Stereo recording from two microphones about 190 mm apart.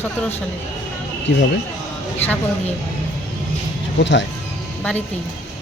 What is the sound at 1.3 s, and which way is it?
Speech, 75° left (ahead or behind).